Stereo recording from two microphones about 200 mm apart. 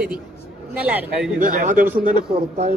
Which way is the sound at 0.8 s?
5° right (ahead or behind).